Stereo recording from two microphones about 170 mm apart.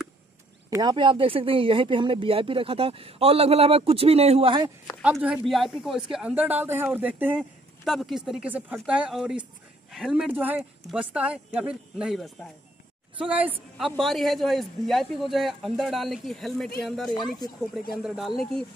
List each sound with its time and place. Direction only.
0.7 s speech: 20° right (ahead or behind)
5.0 s a man's voice: 5° right (ahead or behind)